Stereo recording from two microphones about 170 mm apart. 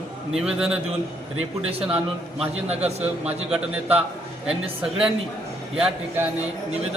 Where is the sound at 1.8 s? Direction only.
5° right (ahead or behind).